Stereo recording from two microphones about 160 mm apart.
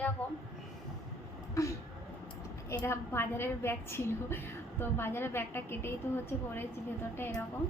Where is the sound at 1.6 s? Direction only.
20° left (ahead or behind).